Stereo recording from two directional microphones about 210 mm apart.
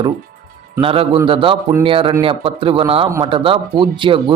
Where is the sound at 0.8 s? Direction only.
25° right (ahead or behind).